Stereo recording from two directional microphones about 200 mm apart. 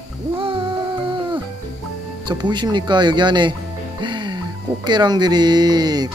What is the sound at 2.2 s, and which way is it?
Speech, 20° right (ahead or behind).